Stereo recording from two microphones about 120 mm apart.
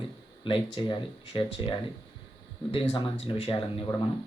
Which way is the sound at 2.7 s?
50° left (ahead or behind).